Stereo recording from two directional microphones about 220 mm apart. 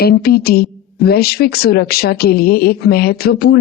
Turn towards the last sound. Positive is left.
turn(degrees=45)  # may be behind; listen again after turning